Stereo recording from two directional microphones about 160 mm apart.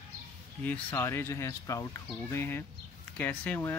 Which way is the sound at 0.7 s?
10° left (ahead or behind).